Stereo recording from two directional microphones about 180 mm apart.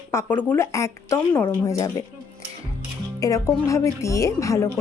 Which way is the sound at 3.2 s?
15° left (ahead or behind).